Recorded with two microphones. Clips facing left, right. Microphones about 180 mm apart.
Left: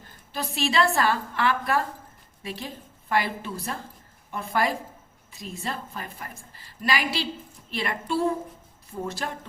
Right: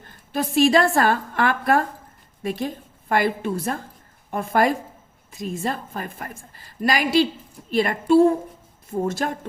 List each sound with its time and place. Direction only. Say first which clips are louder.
0.3 s a woman's voice: right 8 dB; 45° right (ahead or behind)